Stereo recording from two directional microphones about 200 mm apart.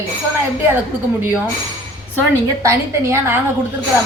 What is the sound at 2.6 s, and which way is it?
Speech, 15° right (ahead or behind).